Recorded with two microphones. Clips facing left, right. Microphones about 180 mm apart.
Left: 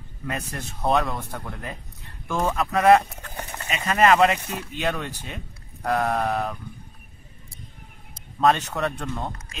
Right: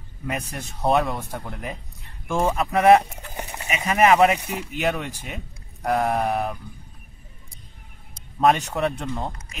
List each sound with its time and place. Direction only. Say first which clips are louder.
0.3 s speech: right 1 dB; 10° right (ahead or behind)
8.4 s speech: right 1 dB; 15° right (ahead or behind)